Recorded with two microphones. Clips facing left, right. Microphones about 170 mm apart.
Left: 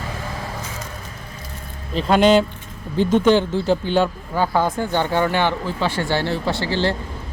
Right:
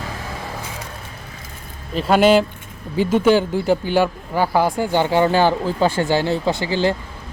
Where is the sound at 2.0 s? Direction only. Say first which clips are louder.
Right 1 dB; 5° right (ahead or behind).